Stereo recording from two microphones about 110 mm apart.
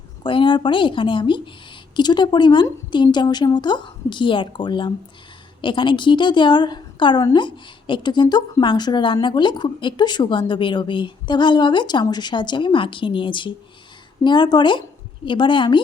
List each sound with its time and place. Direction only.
0.2 s a woman's voice: 50° left (ahead or behind)